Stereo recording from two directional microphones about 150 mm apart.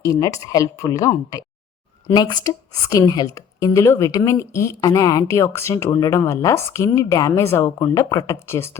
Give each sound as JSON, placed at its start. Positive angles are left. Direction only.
{"t": 0.0, "sound": "a woman's voice", "side_deg": 20}